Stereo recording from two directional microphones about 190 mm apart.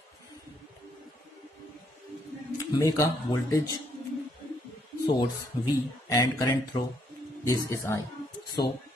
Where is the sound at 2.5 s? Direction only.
20° left (ahead or behind).